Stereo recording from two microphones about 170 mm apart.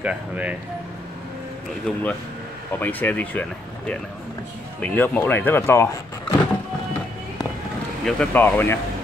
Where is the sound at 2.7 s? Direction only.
10° left (ahead or behind).